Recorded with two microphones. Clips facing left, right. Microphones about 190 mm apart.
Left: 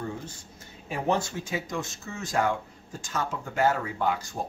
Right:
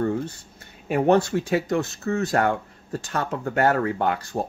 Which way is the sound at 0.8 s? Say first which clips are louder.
Right 9 dB; 65° right (ahead or behind).